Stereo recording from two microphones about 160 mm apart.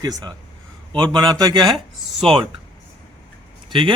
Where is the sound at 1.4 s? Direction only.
25° right (ahead or behind).